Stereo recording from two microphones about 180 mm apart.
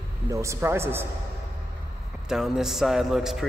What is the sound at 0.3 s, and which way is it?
Speech, 15° right (ahead or behind).